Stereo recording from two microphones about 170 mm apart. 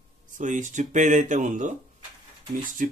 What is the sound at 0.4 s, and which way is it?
Speech, 50° right (ahead or behind).